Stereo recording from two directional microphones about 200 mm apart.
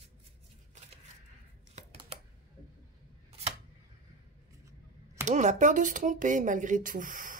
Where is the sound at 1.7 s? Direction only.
30° right (ahead or behind).